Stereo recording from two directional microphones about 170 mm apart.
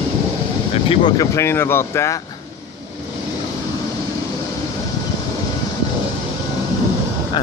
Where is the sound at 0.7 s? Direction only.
35° left (ahead or behind).